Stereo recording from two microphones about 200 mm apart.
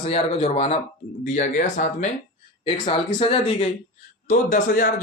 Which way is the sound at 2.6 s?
25° left (ahead or behind).